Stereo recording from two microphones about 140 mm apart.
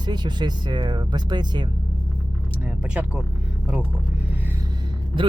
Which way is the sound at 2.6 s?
10° right (ahead or behind).